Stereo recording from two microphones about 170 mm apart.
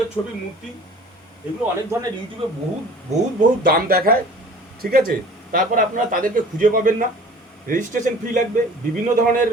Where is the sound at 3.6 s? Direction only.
60° right (ahead or behind).